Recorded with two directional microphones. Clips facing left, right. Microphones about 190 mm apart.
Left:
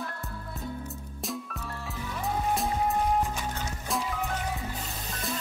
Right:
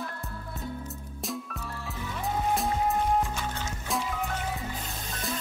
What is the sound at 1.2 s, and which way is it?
Music, centre (ahead or behind).